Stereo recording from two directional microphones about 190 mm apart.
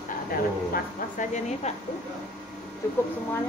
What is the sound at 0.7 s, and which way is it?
Speech, 40° left (ahead or behind).